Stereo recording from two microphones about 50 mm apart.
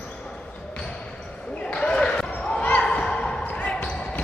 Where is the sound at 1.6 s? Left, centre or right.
Centre.